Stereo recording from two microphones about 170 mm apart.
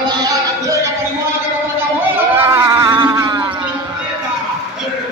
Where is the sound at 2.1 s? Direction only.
15° right (ahead or behind).